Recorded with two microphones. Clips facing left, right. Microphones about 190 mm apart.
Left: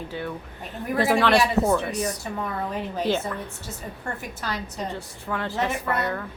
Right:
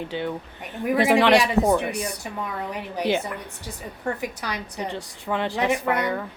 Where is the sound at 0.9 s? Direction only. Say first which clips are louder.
Right 2 dB; 20° right (ahead or behind).